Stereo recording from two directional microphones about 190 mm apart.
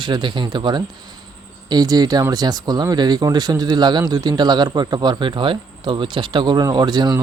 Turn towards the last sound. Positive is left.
turn(degrees=-20)  # may be behind; listen again after turning